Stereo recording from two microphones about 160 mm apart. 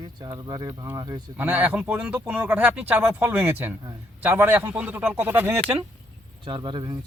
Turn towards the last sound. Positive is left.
turn(degrees=-30)  # may be behind; listen again after turning